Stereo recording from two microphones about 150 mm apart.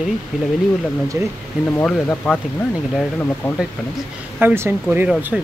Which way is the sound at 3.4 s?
15° left (ahead or behind).